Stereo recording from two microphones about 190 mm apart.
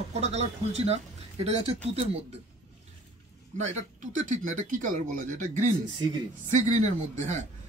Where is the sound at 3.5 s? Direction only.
40° right (ahead or behind).